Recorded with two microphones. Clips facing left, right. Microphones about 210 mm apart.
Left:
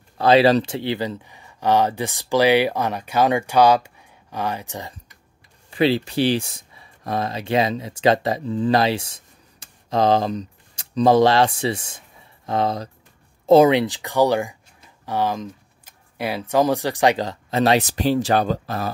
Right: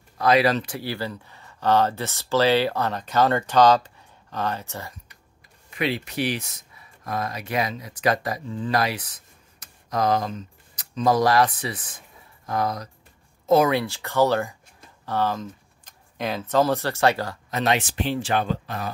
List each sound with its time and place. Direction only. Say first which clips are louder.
0.2 s speech: left 5 dB; 30° left (ahead or behind)
5.7 s speech: left 8 dB; 30° left (ahead or behind)